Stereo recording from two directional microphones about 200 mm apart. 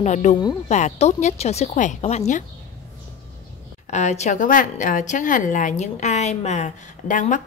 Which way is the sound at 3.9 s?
35° left (ahead or behind).